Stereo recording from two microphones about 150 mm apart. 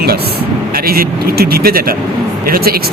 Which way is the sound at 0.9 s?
90° right.